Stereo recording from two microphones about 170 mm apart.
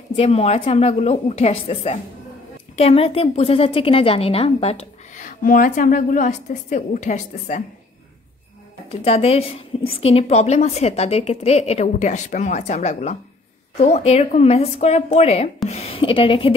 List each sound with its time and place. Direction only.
0.1 s a woman's voice: 35° left (ahead or behind)
9.0 s a woman's voice: 35° left (ahead or behind)